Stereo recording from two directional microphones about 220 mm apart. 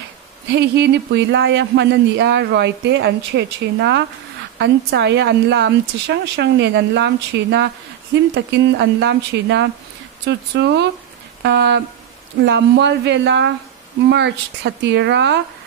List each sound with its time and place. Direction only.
0.5 s speech: 50° right (ahead or behind)